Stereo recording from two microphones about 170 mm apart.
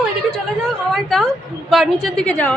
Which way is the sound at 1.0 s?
Centre (ahead or behind).